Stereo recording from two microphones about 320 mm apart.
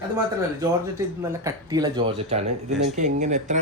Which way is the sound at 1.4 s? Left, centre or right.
Centre.